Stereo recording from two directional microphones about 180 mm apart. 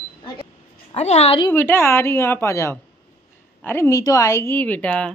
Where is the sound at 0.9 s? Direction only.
35° left (ahead or behind).